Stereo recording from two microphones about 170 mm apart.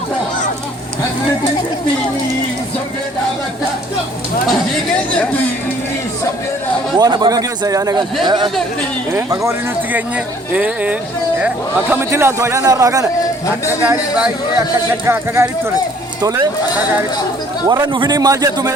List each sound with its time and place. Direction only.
6.9 s a man's voice: 25° right (ahead or behind)
17.7 s a man's voice: 25° right (ahead or behind)